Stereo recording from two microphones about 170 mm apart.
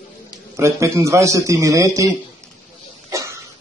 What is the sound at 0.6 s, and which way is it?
Speech, 15° right (ahead or behind).